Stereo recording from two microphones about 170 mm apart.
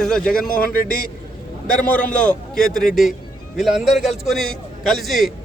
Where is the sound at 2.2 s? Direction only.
5° left (ahead or behind).